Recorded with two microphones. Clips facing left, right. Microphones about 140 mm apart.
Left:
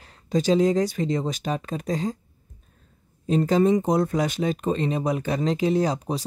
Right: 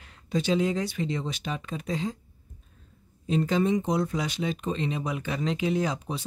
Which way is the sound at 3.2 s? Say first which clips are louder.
Left 5 dB; 40° left (ahead or behind).